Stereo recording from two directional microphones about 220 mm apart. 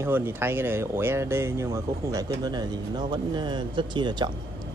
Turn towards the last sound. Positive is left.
turn(degrees=-20)  # may be behind; listen again after turning